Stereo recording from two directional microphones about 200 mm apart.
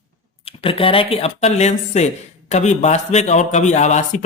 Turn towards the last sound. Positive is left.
turn(degrees=35)  # may be behind; listen again after turning